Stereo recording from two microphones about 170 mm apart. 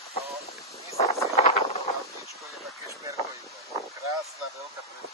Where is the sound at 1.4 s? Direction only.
35° left (ahead or behind).